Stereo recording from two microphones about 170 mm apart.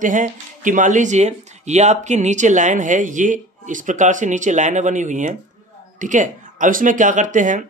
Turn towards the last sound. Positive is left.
turn(degrees=-50)  # may be behind; listen again after turning